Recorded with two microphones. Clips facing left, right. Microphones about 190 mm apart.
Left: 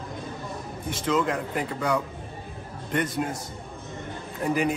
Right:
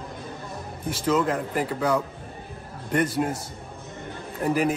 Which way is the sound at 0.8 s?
5° right (ahead or behind).